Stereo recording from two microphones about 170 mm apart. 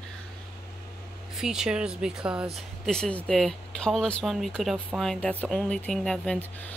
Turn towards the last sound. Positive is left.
turn(degrees=5)  # may be behind; listen again after turning